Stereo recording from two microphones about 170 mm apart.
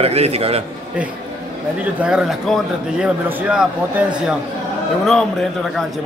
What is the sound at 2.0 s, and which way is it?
A man's voice, 5° right (ahead or behind).